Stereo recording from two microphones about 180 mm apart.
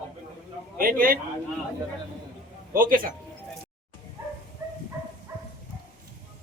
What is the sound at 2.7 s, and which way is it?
Speech, 50° right (ahead or behind).